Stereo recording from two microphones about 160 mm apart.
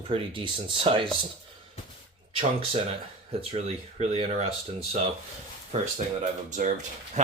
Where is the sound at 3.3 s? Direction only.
40° right (ahead or behind).